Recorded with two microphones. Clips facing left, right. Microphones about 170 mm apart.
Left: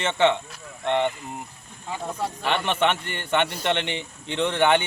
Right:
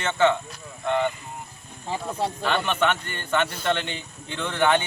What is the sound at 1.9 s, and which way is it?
Speech, 30° right (ahead or behind).